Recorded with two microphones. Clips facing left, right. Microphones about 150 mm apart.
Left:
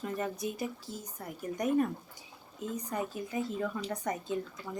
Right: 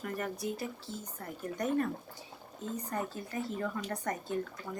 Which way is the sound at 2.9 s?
15° left (ahead or behind).